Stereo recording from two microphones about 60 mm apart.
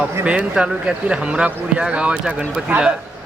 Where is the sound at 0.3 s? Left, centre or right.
Centre.